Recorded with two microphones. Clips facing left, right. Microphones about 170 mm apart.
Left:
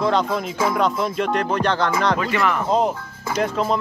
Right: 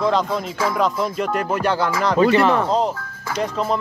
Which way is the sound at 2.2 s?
30° right (ahead or behind).